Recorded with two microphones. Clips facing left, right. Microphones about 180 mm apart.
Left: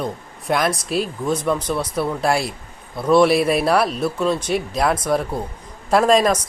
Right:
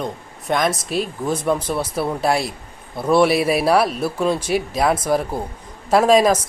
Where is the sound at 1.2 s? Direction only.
30° right (ahead or behind).